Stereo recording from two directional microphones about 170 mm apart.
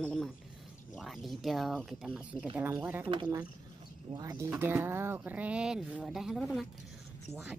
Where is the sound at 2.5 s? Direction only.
10° right (ahead or behind).